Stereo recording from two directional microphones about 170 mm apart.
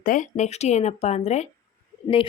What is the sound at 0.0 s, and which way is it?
A woman's voice, 50° left (ahead or behind).